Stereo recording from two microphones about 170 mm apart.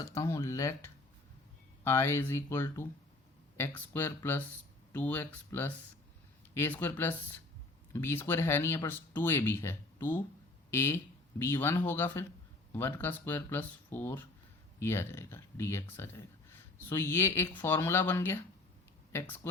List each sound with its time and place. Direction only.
0.0 s speech: 20° left (ahead or behind)